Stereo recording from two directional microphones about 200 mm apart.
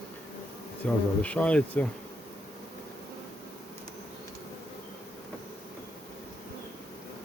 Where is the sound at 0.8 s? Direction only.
5° left (ahead or behind).